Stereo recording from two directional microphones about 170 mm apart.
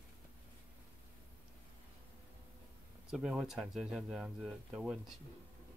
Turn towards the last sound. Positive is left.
turn(degrees=0)  # may be behind; listen again after turning